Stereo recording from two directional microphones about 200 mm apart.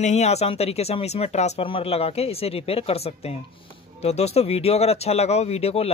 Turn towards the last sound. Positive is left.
turn(degrees=30)  # may be behind; listen again after turning